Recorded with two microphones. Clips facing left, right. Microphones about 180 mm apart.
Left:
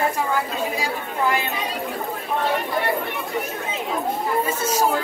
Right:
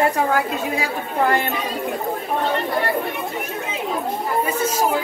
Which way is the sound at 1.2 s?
60° right (ahead or behind).